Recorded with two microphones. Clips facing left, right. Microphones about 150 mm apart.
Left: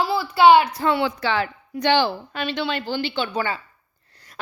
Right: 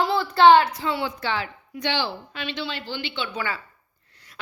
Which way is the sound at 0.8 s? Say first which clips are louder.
Left 6 dB; 60° left (ahead or behind).